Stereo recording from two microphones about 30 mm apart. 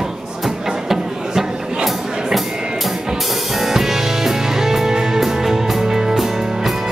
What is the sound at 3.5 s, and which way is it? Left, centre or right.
Music, centre.